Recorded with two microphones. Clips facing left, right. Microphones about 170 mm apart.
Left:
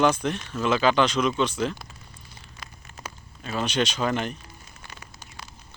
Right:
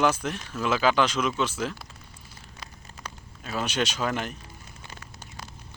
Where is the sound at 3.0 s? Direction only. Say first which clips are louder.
Left 1 dB; 5° left (ahead or behind).